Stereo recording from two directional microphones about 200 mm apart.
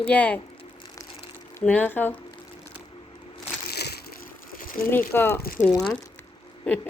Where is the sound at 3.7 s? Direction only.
55° left (ahead or behind).